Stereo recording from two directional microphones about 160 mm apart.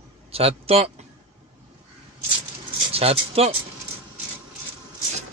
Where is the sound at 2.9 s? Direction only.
40° right (ahead or behind).